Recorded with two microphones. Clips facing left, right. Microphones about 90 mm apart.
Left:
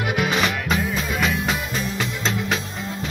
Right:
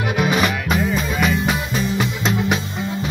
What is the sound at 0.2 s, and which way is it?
Music, 5° right (ahead or behind).